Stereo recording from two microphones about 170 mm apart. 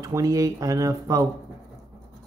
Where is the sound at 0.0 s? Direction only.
20° right (ahead or behind).